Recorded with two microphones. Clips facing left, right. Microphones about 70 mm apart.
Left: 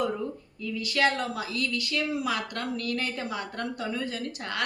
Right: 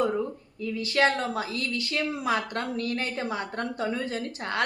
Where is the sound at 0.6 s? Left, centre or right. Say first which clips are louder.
Right 2 dB; right.